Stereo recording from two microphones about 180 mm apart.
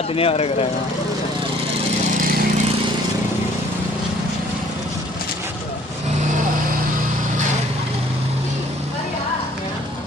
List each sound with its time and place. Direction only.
0.1 s speech: 30° left (ahead or behind)